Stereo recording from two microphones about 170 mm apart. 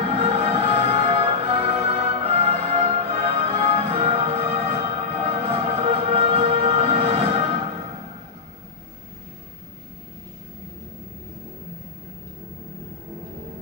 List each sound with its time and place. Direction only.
0.0 s music: 40° right (ahead or behind)